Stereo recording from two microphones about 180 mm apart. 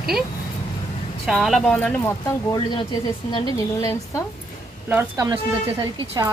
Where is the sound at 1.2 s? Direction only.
Centre (ahead or behind).